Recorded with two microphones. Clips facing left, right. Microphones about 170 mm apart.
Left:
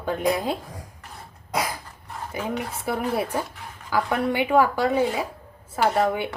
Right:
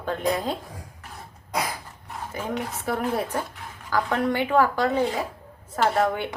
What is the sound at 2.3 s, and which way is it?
Speech, 10° left (ahead or behind).